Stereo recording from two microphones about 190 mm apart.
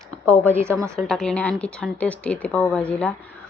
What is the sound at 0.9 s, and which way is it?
A woman's voice, 5° left (ahead or behind).